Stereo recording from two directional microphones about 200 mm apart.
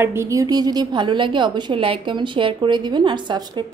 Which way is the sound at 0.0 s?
15° right (ahead or behind).